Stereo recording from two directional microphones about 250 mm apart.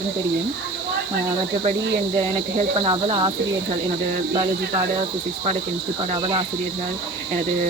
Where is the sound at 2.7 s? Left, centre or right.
Right.